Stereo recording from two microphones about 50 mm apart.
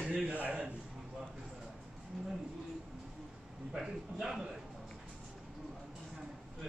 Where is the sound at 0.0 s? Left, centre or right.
Right.